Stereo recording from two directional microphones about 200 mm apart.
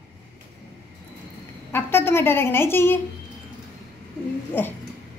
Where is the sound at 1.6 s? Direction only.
10° left (ahead or behind).